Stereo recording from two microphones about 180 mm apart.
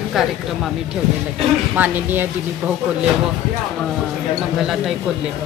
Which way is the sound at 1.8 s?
10° right (ahead or behind).